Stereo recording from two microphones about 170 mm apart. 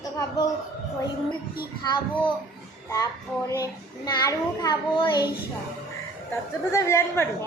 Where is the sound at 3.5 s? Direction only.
20° left (ahead or behind).